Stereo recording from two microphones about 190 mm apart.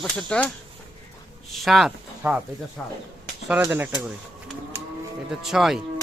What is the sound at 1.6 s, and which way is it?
Speech, centre (ahead or behind).